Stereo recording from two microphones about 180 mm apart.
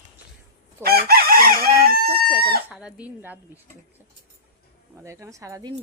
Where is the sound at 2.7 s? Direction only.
5° right (ahead or behind).